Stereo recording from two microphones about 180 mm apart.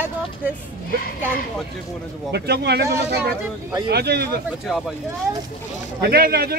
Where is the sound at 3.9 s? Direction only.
60° right (ahead or behind).